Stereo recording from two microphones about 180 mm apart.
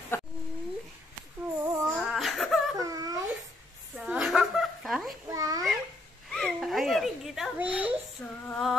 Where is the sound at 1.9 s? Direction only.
Centre (ahead or behind).